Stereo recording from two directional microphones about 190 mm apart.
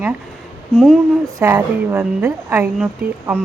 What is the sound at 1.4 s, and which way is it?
A woman's voice, 15° right (ahead or behind).